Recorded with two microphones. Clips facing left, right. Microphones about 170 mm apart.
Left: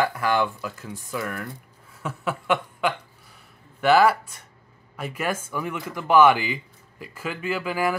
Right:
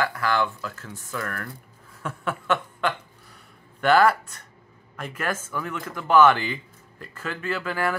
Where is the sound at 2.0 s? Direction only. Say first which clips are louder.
Left 1 dB; 5° left (ahead or behind).